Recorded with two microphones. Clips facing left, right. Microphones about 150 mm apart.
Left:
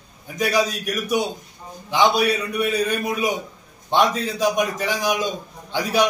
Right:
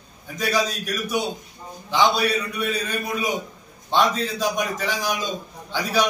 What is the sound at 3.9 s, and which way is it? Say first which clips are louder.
A man's voice: left 1 dB; 15° left (ahead or behind).